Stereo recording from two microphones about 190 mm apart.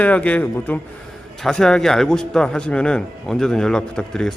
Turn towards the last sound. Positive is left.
turn(degrees=5)  # may be behind; listen again after turning